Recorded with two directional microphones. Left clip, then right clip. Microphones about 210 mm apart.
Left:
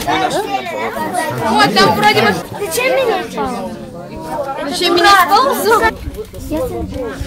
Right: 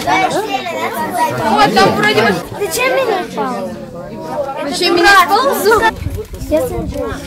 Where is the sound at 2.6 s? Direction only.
10° right (ahead or behind).